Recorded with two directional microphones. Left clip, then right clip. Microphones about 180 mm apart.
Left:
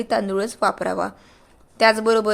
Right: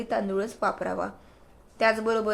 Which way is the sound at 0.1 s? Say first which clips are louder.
Left 5 dB; 40° left (ahead or behind).